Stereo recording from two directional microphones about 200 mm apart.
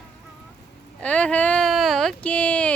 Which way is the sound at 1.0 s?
5° left (ahead or behind).